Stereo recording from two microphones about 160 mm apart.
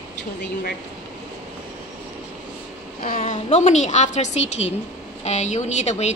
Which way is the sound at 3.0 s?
55° left (ahead or behind).